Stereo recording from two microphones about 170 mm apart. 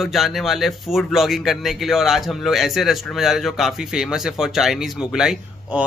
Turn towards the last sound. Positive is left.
turn(degrees=-5)  # may be behind; listen again after turning